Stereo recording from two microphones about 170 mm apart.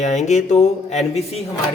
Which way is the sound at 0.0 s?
45° left (ahead or behind).